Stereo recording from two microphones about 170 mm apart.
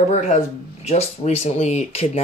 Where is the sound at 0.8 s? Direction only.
40° left (ahead or behind).